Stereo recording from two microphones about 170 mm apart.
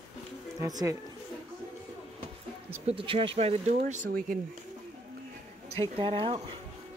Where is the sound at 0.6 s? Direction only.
20° right (ahead or behind).